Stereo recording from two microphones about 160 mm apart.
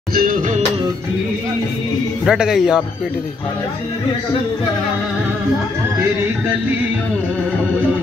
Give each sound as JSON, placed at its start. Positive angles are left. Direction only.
{"t": 0.1, "sound": "music", "side_deg": -70}
{"t": 2.2, "sound": "speech", "side_deg": -5}